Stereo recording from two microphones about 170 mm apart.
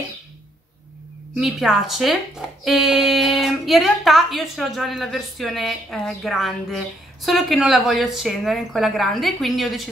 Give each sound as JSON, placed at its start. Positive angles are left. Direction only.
{"t": 1.3, "sound": "speech", "side_deg": 0}